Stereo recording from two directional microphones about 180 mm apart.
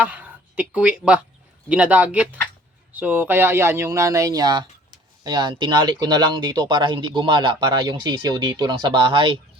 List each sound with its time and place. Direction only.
0.0 s speech: 10° right (ahead or behind); by 9.4 s 30° right (ahead or behind)